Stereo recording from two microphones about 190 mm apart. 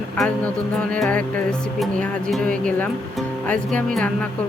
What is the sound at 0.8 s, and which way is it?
Music, 5° left (ahead or behind).